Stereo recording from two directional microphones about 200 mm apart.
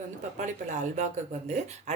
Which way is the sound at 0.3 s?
40° right (ahead or behind).